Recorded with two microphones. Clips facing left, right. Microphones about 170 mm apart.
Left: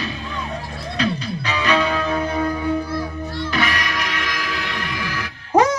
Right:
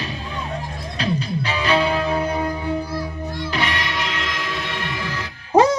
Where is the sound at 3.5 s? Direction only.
25° right (ahead or behind).